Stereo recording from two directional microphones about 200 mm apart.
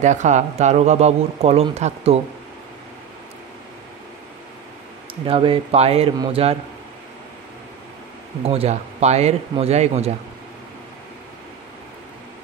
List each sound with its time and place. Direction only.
0.0 s speech: 35° right (ahead or behind)
5.2 s speech: 25° right (ahead or behind)
8.5 s speech: 30° right (ahead or behind)